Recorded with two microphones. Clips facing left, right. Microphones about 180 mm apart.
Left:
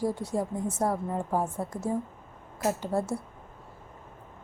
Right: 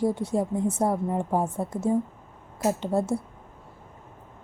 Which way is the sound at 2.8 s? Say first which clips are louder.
Right 4 dB; 25° right (ahead or behind).